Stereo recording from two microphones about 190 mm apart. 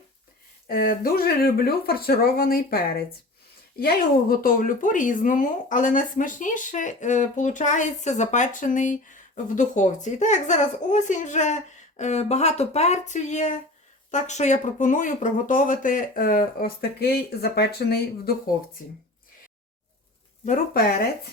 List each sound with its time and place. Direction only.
0.7 s speech: 50° left (ahead or behind)
20.4 s speech: 45° left (ahead or behind)